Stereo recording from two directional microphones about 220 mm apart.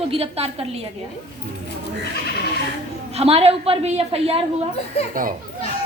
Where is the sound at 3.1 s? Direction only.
25° right (ahead or behind).